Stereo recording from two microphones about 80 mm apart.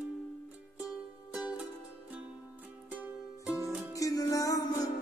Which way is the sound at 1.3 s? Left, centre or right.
Centre.